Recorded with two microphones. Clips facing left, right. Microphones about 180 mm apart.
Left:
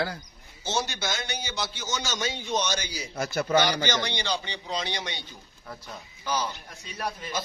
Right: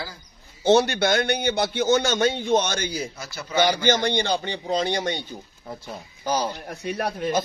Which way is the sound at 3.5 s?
50° right (ahead or behind).